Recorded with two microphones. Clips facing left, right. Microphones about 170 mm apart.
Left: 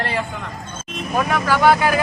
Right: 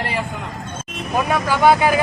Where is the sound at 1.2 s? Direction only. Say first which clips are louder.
Right 1 dB; 20° right (ahead or behind).